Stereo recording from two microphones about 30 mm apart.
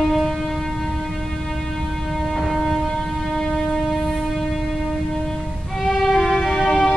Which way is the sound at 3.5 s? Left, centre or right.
Centre.